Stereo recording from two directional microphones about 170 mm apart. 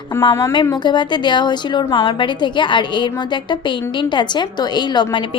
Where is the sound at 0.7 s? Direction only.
25° left (ahead or behind).